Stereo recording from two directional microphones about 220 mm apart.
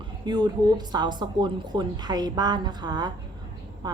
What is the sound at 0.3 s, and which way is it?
A woman's voice, 20° right (ahead or behind).